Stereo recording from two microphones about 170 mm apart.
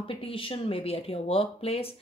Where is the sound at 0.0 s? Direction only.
30° left (ahead or behind).